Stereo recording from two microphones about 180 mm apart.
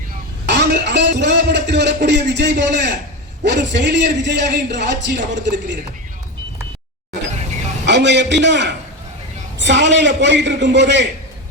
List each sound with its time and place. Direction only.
0.4 s a man's voice: 70° right (ahead or behind)
7.9 s a man's voice: 75° right (ahead or behind)